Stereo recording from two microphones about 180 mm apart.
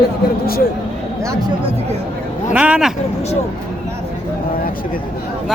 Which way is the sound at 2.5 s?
5° right (ahead or behind).